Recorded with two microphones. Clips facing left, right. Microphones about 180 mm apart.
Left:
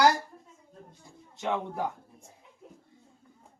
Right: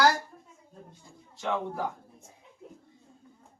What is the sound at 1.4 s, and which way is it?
Speech, 20° left (ahead or behind).